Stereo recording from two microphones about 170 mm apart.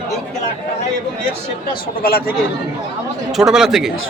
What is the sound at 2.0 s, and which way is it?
Speech, 65° left (ahead or behind).